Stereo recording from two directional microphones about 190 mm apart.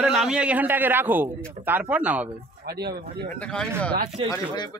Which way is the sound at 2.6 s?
60° right (ahead or behind).